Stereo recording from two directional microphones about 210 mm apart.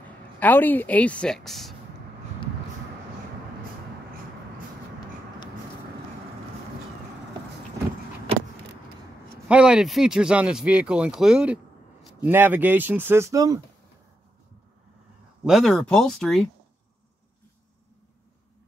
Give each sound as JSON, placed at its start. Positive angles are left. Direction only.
{"t": 0.4, "sound": "a woman's voice", "side_deg": 10}
{"t": 9.5, "sound": "speech", "side_deg": -5}
{"t": 15.4, "sound": "speech", "side_deg": 0}